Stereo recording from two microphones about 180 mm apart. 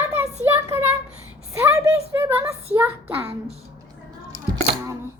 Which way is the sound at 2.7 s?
10° right (ahead or behind).